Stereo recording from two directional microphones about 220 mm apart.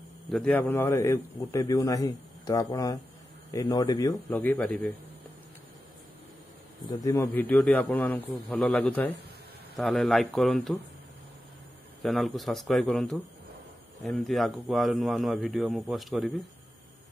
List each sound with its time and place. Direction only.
0.3 s a man's voice: 5° left (ahead or behind)
6.9 s a man's voice: 15° left (ahead or behind)
12.0 s a man's voice: centre (ahead or behind)